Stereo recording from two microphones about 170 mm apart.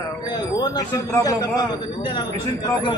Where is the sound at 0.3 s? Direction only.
25° left (ahead or behind).